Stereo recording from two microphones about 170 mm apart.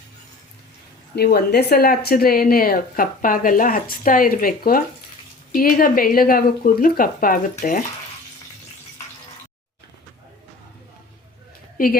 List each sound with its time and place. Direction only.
1.1 s speech: 70° left (ahead or behind); by 7.9 s 55° left (ahead or behind)
11.8 s speech: 60° left (ahead or behind)